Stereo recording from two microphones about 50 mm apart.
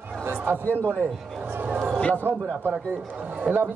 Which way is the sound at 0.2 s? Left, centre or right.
Right.